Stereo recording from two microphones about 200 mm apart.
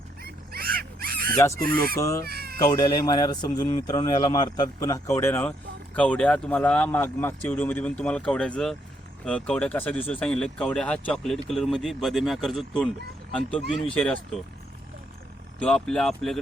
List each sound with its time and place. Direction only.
0.2 s dog: 50° right (ahead or behind)
1.5 s speech: 50° right (ahead or behind)
2.0 s speech: 15° left (ahead or behind)
2.2 s cat: 50° right (ahead or behind)
2.6 s speech: 20° left (ahead or behind)
15.5 s speech: 5° left (ahead or behind)